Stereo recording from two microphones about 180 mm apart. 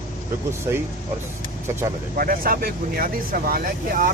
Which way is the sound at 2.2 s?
55° right (ahead or behind).